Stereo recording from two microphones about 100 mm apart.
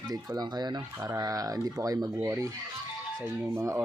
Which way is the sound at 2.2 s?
30° right (ahead or behind).